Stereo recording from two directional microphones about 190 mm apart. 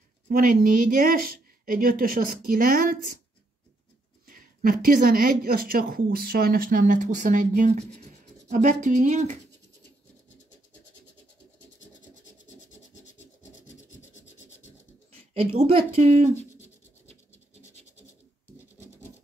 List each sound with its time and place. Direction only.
0.3 s a woman's voice: 50° right (ahead or behind)
4.3 s a woman's voice: 50° right (ahead or behind)
15.5 s speech: 35° right (ahead or behind)